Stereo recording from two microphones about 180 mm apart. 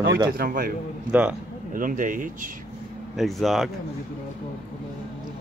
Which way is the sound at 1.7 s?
45° right (ahead or behind).